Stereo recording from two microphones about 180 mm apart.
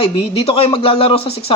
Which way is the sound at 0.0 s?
35° left (ahead or behind).